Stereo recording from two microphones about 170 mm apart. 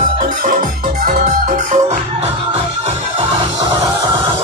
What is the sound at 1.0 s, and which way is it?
Music, 55° right (ahead or behind).